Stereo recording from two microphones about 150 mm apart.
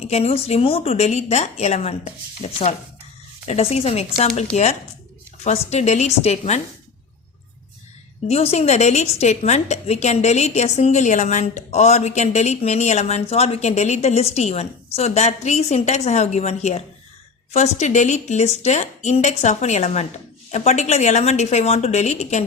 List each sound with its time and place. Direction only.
0.0 s a woman's voice: 45° left (ahead or behind)
3.4 s a woman's voice: 45° left (ahead or behind)
8.3 s a woman's voice: 45° left (ahead or behind)